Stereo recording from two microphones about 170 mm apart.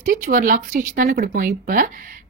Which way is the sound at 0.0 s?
50° right (ahead or behind).